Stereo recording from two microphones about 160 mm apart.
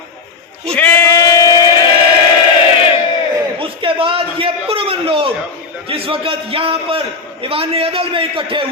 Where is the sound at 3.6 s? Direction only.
35° right (ahead or behind).